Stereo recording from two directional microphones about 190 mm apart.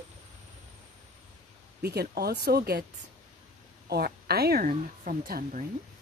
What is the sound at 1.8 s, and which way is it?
A woman's voice, 55° right (ahead or behind).